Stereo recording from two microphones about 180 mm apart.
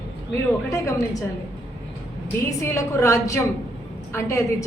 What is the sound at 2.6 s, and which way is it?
A woman's voice, 15° left (ahead or behind).